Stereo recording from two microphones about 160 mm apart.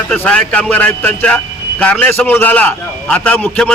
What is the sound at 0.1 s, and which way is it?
A man's voice, 10° left (ahead or behind).